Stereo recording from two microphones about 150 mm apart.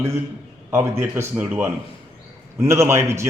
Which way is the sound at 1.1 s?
10° right (ahead or behind).